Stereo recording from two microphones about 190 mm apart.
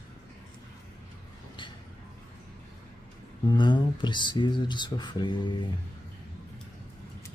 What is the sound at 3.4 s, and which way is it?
Speech, 25° left (ahead or behind).